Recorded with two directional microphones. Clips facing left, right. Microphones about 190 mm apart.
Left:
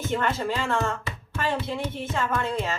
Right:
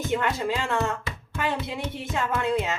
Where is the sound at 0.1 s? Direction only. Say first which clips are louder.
Even; 15° right (ahead or behind).